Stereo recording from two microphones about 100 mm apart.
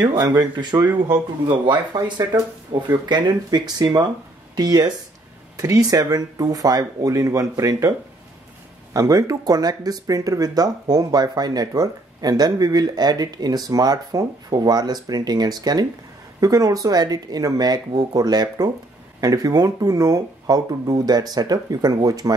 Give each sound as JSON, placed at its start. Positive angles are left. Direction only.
{"t": 0.0, "sound": "speech", "side_deg": -40}
{"t": 2.7, "sound": "speech", "side_deg": -70}
{"t": 3.1, "sound": "speech", "side_deg": -45}
{"t": 8.9, "sound": "speech", "side_deg": -35}